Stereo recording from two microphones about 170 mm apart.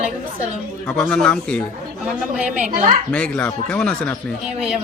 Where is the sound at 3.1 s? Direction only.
5° left (ahead or behind).